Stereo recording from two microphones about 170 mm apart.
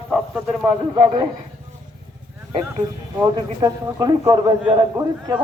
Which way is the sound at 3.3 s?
20° right (ahead or behind).